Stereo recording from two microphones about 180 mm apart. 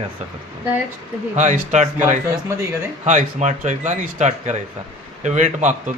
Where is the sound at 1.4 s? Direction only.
40° right (ahead or behind).